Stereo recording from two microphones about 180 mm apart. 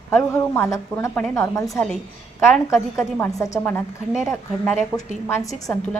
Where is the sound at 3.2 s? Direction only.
10° left (ahead or behind).